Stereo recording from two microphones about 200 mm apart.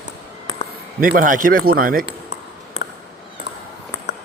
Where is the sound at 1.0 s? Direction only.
45° right (ahead or behind).